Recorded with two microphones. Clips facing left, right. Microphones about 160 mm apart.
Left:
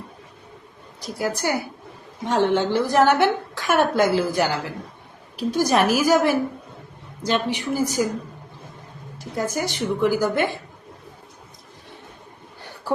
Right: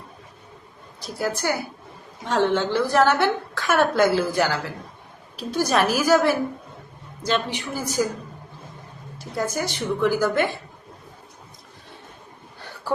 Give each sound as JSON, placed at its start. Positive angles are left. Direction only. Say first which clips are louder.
{"t": 1.2, "sound": "a woman's voice", "louder": "left 1 dB", "side_deg": 15}
{"t": 9.1, "sound": "a woman's voice", "louder": "left 1 dB", "side_deg": 15}